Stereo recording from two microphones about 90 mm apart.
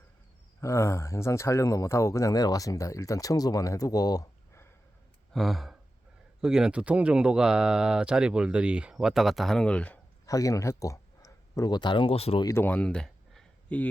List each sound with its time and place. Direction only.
0.6 s speech: 30° left (ahead or behind)
5.3 s speech: centre (ahead or behind)
10.2 s speech: 40° left (ahead or behind); by 12.4 s 90° left
12.5 s a sound: 20° left (ahead or behind)